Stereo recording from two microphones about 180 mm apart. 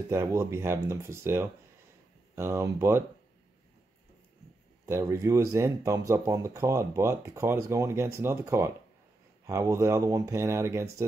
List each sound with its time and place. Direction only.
0.1 s speech: 15° right (ahead or behind)
4.8 s speech: 15° right (ahead or behind)